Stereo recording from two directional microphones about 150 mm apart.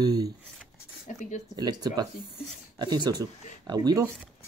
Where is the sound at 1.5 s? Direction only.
25° right (ahead or behind).